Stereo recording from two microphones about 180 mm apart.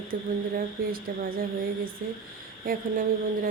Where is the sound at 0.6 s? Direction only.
55° right (ahead or behind).